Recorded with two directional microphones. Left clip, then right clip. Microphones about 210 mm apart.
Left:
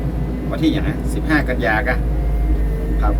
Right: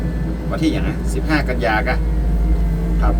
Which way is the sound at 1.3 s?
5° right (ahead or behind).